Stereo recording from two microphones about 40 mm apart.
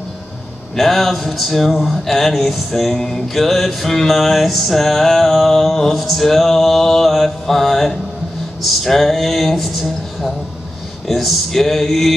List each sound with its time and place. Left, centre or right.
0.7 s music: centre
3.0 s mantra: centre
3.3 s music: centre
8.6 s speech: centre
11.1 s music: centre